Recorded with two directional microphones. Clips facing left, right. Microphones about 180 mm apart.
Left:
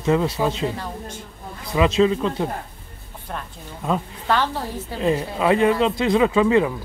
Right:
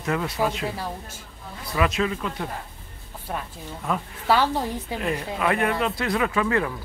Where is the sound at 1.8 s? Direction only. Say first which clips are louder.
Left 7 dB; 25° left (ahead or behind).